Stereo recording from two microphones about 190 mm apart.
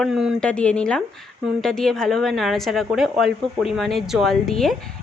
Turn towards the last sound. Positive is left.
turn(degrees=0)  # may be behind; listen again after turning